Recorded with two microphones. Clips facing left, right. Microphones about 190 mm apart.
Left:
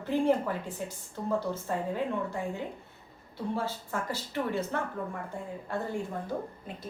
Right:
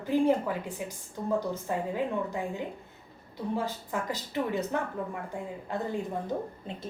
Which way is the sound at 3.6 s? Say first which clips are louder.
Right 1 dB; 15° right (ahead or behind).